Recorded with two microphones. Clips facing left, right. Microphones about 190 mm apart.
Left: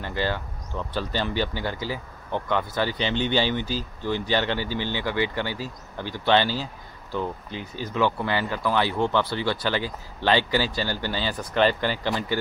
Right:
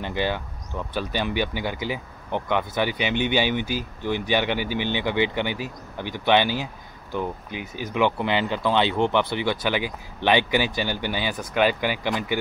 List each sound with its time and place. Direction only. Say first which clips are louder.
0.0 s speech: right 1 dB; 15° right (ahead or behind)